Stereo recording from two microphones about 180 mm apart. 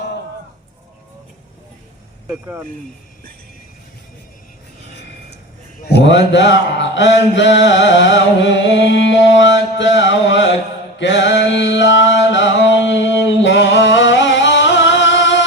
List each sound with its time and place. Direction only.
2.2 s speech: 10° right (ahead or behind)
5.8 s mantra: 70° left (ahead or behind)
12.1 s music: 85° left